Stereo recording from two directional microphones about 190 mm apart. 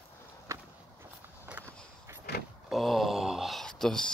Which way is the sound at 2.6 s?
Centre (ahead or behind).